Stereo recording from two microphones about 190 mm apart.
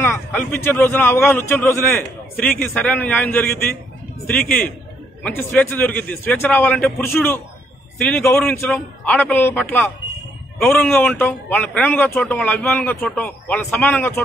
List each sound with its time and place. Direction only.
0.0 s a man's voice: 10° left (ahead or behind)